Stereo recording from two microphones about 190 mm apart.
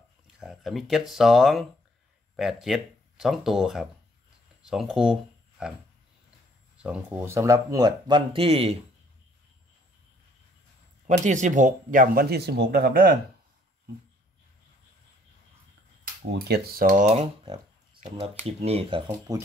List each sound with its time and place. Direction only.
0.4 s speech: centre (ahead or behind)
6.8 s speech: 10° right (ahead or behind); by 8.7 s 30° right (ahead or behind)
11.1 s speech: 40° right (ahead or behind); by 13.2 s 55° right (ahead or behind)
16.3 s speech: 55° right (ahead or behind)
17.0 s speech: 35° right (ahead or behind)